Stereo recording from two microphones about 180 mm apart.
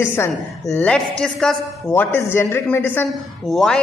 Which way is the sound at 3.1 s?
Centre (ahead or behind).